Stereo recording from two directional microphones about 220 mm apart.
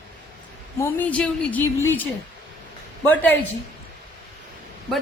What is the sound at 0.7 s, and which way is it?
Speech, 10° left (ahead or behind).